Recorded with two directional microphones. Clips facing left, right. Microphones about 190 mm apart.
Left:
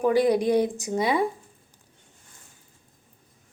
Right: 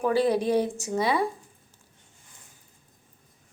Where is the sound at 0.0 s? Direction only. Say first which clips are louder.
Left 3 dB; 15° left (ahead or behind).